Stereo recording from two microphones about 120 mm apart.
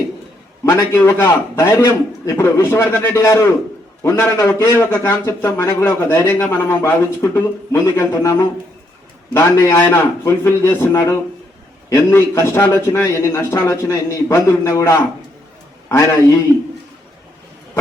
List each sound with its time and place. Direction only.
0.6 s a man's voice: 20° left (ahead or behind)
4.8 s a man's voice: 20° left (ahead or behind)